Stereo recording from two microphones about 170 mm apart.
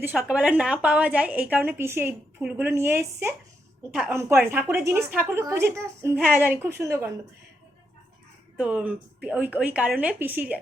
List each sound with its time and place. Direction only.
0.0 s a woman's voice: 10° right (ahead or behind)
8.5 s a woman's voice: 5° right (ahead or behind)